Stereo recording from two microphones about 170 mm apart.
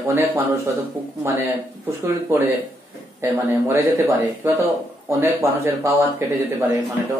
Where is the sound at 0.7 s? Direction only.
15° right (ahead or behind).